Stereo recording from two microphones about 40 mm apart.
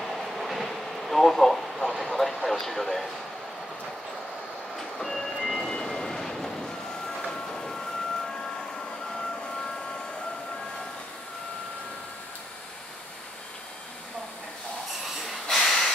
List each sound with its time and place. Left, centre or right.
0.0 s train: centre
0.9 s a sound: centre
2.0 s vehicle: centre
2.4 s speech: centre
4.7 s train: centre
5.7 s vehicle: centre
15.4 s snort: centre